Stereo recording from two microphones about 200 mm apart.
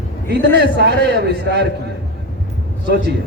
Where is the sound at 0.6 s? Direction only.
55° right (ahead or behind).